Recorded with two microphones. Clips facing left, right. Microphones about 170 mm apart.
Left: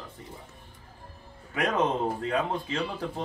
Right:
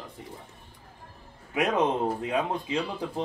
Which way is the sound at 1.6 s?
15° right (ahead or behind).